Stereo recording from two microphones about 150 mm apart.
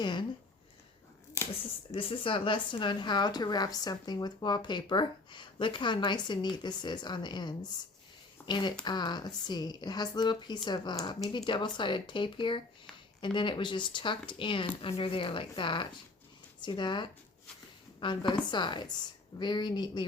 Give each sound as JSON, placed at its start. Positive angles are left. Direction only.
{"t": 0.0, "sound": "speech", "side_deg": 30}
{"t": 1.4, "sound": "a sound", "side_deg": 20}
{"t": 2.0, "sound": "speech", "side_deg": 35}